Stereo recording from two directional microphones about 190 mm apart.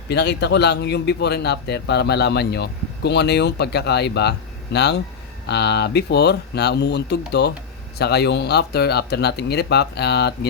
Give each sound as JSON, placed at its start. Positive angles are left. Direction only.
{"t": 0.1, "sound": "a man's voice", "side_deg": 60}